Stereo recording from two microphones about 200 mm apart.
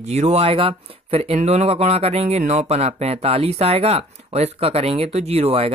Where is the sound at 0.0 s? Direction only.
30° right (ahead or behind).